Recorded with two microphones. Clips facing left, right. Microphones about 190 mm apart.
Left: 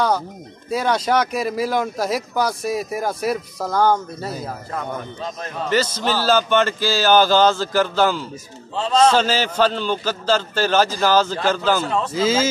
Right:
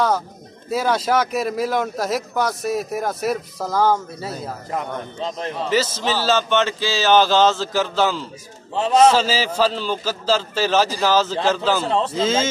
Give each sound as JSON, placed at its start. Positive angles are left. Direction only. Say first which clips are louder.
{"t": 0.7, "sound": "speech", "louder": "even", "side_deg": -5}
{"t": 4.7, "sound": "speech", "louder": "right 2 dB", "side_deg": -25}
{"t": 5.7, "sound": "speech", "louder": "left 1 dB", "side_deg": 0}
{"t": 8.7, "sound": "speech", "louder": "right 2 dB", "side_deg": -20}
{"t": 9.1, "sound": "speech", "louder": "left 1 dB", "side_deg": -5}
{"t": 11.8, "sound": "speech", "louder": "right 2 dB", "side_deg": -30}
{"t": 12.1, "sound": "speech", "louder": "left 1 dB", "side_deg": 0}